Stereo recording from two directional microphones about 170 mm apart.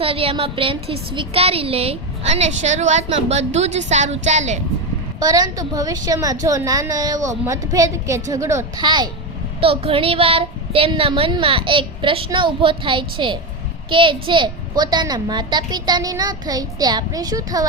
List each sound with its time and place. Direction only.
0.0 s a woman's voice: 35° right (ahead or behind)
5.2 s a child's voice: 20° right (ahead or behind)